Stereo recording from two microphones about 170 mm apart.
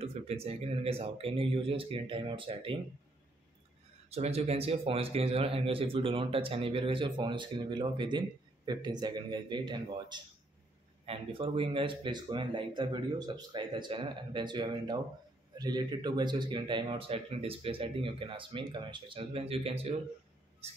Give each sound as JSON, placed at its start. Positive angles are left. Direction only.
{"t": 0.0, "sound": "speech", "side_deg": -35}
{"t": 4.1, "sound": "speech", "side_deg": -40}